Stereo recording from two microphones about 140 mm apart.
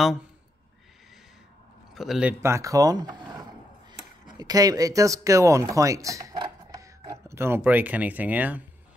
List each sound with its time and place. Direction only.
2.0 s speech: 5° right (ahead or behind)
2.4 s speech: 20° right (ahead or behind)
6.4 s a sound: 25° right (ahead or behind)